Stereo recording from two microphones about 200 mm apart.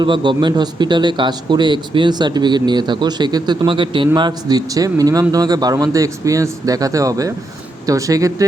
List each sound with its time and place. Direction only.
0.0 s a man's voice: 25° right (ahead or behind)